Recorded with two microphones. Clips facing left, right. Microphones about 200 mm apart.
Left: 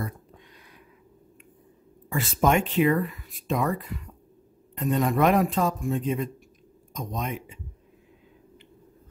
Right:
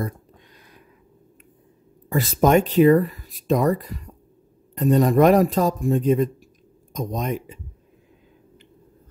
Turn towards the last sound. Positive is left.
turn(degrees=-40)  # may be behind; listen again after turning